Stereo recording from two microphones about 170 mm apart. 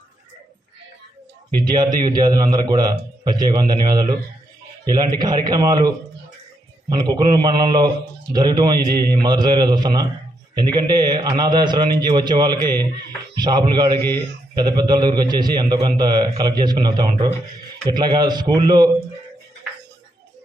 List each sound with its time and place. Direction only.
1.5 s a man's voice: 25° right (ahead or behind)
6.9 s a man's voice: 25° right (ahead or behind)